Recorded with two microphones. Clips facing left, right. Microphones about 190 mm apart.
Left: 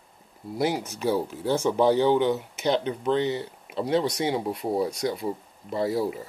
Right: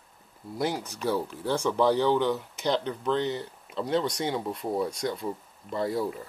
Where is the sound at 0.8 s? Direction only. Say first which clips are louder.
Left 3 dB; 25° left (ahead or behind).